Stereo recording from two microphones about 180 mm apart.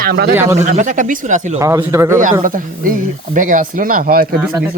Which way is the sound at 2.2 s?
45° right (ahead or behind).